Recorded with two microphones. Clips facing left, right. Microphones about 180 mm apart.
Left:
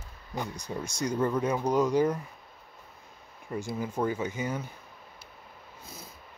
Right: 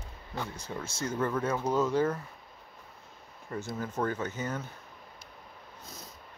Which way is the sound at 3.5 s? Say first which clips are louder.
Left 3 dB; 10° left (ahead or behind).